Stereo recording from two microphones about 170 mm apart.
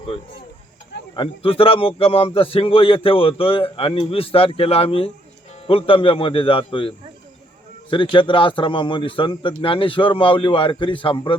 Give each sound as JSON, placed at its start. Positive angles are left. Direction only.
{"t": 1.1, "sound": "a man's voice", "side_deg": 30}